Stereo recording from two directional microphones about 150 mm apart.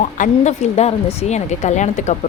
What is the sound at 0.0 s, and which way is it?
A woman's voice, 55° left (ahead or behind).